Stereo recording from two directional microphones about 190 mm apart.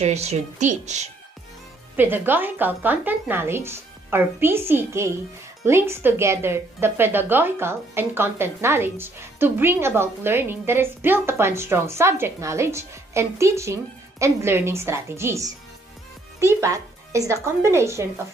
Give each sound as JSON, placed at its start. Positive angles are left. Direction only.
{"t": 0.0, "sound": "a woman's voice", "side_deg": -35}
{"t": 2.0, "sound": "speech", "side_deg": -10}